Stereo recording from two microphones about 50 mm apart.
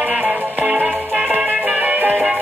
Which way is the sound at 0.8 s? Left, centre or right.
Centre.